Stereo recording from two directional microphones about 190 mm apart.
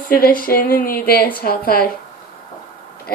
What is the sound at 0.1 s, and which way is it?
Speech, 50° left (ahead or behind).